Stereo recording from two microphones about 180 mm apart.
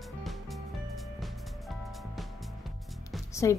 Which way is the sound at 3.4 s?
20° left (ahead or behind).